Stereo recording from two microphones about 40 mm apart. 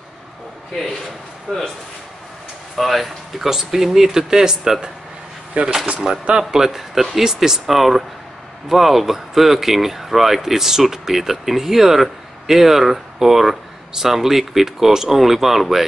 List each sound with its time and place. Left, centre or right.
1.5 s speech: centre
2.8 s speech: centre
5.5 s speech: right
6.0 s speech: centre